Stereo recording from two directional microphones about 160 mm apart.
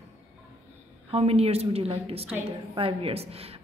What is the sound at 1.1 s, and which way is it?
A man's voice, 40° right (ahead or behind).